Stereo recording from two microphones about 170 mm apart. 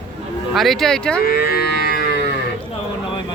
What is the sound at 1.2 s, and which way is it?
Livestock, 65° left (ahead or behind).